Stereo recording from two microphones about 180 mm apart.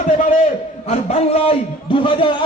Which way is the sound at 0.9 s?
35° left (ahead or behind).